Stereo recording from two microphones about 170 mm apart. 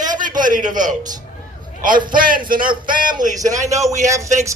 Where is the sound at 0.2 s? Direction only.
50° right (ahead or behind).